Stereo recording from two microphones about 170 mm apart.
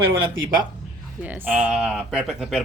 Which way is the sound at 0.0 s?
30° right (ahead or behind).